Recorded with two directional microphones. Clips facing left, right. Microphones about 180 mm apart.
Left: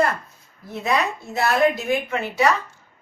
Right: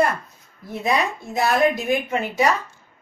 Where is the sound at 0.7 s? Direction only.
15° right (ahead or behind).